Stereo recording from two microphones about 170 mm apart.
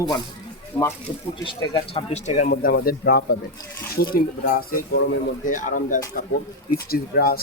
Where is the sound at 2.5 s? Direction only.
60° left (ahead or behind).